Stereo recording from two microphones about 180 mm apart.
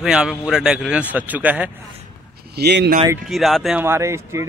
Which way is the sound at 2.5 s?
65° right (ahead or behind).